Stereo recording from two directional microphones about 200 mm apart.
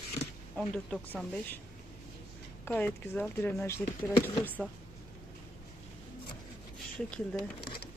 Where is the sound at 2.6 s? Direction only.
10° left (ahead or behind).